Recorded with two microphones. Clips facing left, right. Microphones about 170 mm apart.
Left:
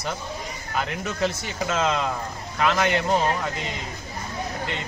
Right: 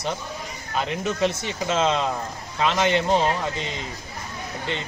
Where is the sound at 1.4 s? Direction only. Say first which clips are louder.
Right 2 dB; 25° right (ahead or behind).